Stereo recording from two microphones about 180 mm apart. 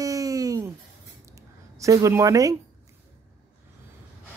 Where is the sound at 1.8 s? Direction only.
15° right (ahead or behind).